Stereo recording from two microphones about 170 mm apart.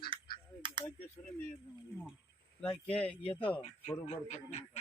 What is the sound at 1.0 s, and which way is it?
Speech, 10° left (ahead or behind).